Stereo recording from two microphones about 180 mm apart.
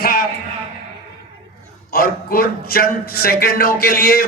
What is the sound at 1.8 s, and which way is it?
Speech, 55° left (ahead or behind).